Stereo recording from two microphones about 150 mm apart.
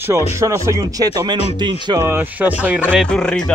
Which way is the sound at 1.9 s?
15° right (ahead or behind).